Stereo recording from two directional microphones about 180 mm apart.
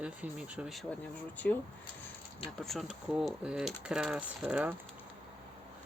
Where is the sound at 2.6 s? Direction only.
Centre (ahead or behind).